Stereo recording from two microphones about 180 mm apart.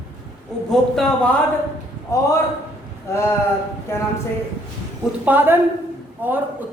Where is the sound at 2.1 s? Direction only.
15° left (ahead or behind).